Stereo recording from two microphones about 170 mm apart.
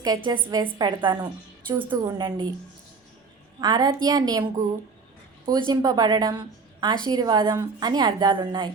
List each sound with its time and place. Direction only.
0.3 s a woman's voice: 25° right (ahead or behind)
3.6 s a woman's voice: 25° right (ahead or behind)